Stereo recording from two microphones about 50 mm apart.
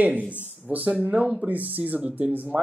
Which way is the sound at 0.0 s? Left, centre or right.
Right.